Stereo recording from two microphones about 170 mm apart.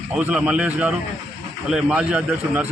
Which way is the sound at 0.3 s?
5° right (ahead or behind).